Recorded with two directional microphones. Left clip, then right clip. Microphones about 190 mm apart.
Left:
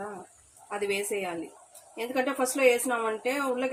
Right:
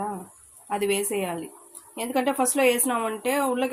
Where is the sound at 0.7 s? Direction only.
50° right (ahead or behind).